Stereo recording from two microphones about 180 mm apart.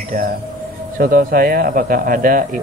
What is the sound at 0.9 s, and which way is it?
Speech, 55° right (ahead or behind).